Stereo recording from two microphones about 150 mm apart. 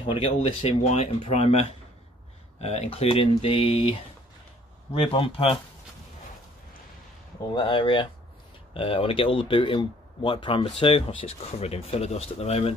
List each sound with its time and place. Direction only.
0.0 s speech: 40° left (ahead or behind)
7.4 s speech: 30° left (ahead or behind)